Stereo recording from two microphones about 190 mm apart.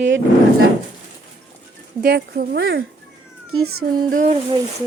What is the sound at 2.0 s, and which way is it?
Speech, 55° right (ahead or behind).